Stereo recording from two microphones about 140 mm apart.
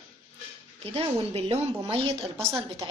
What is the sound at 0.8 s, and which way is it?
A woman's voice, 45° right (ahead or behind).